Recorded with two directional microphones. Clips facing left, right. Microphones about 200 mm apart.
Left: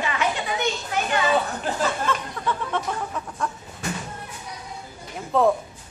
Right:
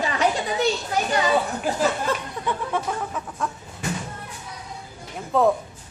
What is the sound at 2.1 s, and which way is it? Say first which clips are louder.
Speech: right 1 dB; 35° right (ahead or behind).